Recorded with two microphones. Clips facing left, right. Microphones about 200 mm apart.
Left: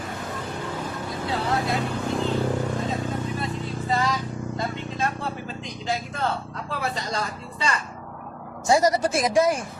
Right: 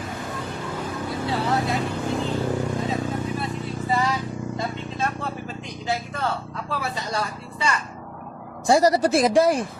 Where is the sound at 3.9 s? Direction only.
10° right (ahead or behind).